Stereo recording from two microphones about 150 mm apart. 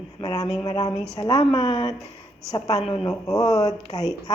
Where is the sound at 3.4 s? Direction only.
25° left (ahead or behind).